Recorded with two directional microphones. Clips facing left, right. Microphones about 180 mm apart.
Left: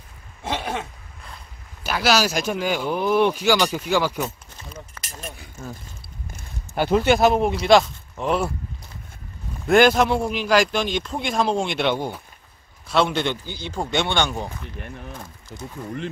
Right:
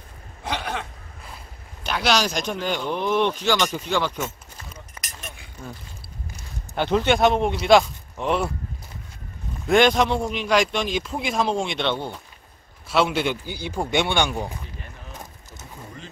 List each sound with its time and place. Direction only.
1.8 s speech: 5° left (ahead or behind)
4.7 s a sound: 30° left (ahead or behind)
5.6 s speech: 45° left (ahead or behind)
6.7 s a man's voice: 5° left (ahead or behind)
9.7 s a man's voice: 5° left (ahead or behind)
12.8 s speech: 5° right (ahead or behind)